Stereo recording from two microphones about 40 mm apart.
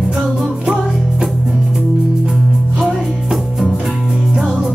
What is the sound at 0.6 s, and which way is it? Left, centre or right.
Music, centre.